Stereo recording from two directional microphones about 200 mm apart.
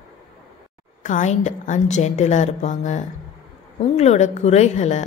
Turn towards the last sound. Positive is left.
turn(degrees=35)  # may be behind; listen again after turning